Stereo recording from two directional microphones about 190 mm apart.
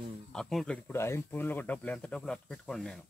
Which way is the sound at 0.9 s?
15° left (ahead or behind).